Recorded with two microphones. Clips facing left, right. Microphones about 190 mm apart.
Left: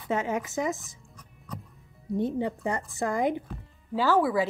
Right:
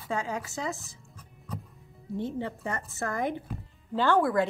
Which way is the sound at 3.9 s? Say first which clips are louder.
Left 1 dB; 5° left (ahead or behind).